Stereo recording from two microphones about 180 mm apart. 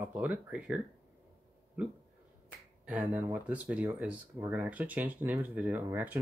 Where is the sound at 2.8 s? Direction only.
10° right (ahead or behind).